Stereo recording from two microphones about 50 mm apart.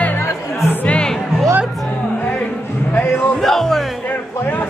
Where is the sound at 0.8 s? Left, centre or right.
Left.